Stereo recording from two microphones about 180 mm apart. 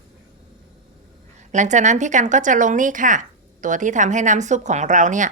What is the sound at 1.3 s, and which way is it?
A woman's voice, 40° right (ahead or behind).